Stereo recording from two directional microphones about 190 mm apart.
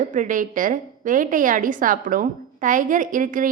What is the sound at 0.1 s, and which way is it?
A woman's voice, 45° right (ahead or behind).